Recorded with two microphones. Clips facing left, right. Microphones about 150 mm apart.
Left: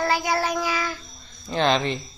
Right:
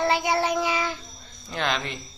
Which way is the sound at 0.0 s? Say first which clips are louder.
Even; 25° right (ahead or behind).